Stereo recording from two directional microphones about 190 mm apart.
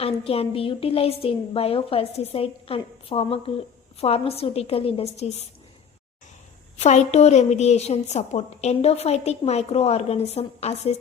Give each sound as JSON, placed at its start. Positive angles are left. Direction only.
{"t": 0.0, "sound": "a woman's voice", "side_deg": 30}
{"t": 6.7, "sound": "a woman's voice", "side_deg": 35}